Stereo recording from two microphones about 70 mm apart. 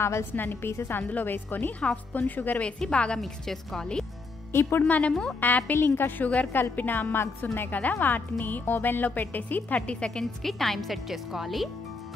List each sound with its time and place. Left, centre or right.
0.0 s a woman's voice: left
1.0 s a woman's voice: left
2.8 s speech: centre
4.5 s speech: left
4.8 s a woman's voice: left
9.8 s speech: centre
10.2 s speech: centre